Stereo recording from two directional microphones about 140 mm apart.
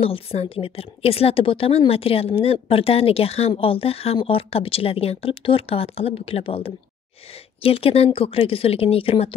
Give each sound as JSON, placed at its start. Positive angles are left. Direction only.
{"t": 0.0, "sound": "a woman's voice", "side_deg": 45}